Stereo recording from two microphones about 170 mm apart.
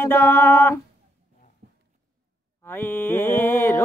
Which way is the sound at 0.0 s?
15° left (ahead or behind).